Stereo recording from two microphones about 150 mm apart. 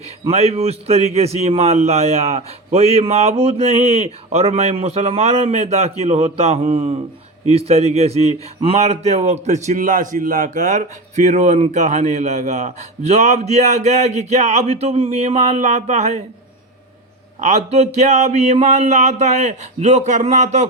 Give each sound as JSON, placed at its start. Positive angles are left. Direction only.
{"t": 0.3, "sound": "a man's voice", "side_deg": -45}
{"t": 17.4, "sound": "a man's voice", "side_deg": -50}